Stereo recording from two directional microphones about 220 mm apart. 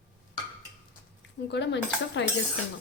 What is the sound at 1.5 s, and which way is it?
Speech, 55° left (ahead or behind).